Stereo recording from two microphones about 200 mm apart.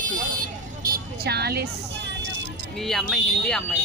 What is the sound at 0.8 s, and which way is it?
Speech, 50° right (ahead or behind).